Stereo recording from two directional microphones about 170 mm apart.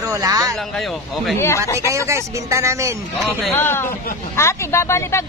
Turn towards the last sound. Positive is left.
turn(degrees=15)  # may be behind; listen again after turning